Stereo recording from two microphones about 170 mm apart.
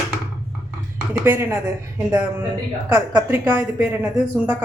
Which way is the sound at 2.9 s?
10° right (ahead or behind).